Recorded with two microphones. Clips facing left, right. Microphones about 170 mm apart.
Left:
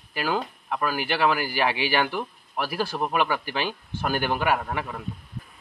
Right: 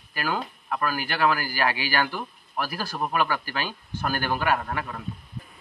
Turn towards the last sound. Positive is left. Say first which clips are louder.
# left 1 dB
turn(degrees=15)  # may be behind; listen again after turning